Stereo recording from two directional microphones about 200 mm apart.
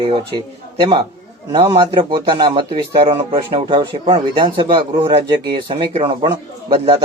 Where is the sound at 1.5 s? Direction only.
20° right (ahead or behind).